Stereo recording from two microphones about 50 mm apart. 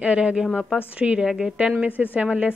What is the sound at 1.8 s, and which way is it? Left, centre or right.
Speech, right.